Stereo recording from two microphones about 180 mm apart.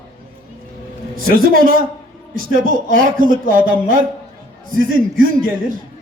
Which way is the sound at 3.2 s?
50° right (ahead or behind).